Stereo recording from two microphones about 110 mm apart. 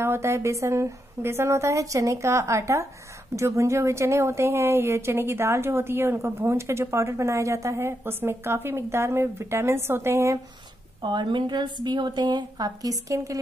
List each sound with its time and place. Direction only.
0.0 s a woman's voice: 25° right (ahead or behind)
11.0 s a woman's voice: 45° right (ahead or behind)